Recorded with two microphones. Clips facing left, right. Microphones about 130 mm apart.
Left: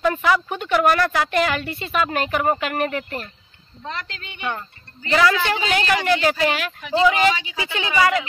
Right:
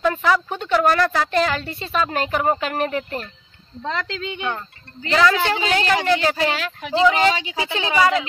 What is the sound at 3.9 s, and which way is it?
Speech, 90° right.